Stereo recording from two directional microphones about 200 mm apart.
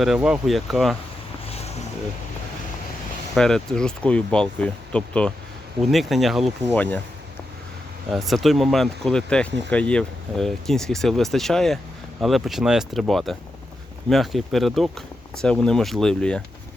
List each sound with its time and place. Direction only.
0.0 s speech: 5° right (ahead or behind)
1.5 s vehicle: 30° left (ahead or behind)
3.3 s speech: 5° left (ahead or behind)
8.1 s speech: centre (ahead or behind)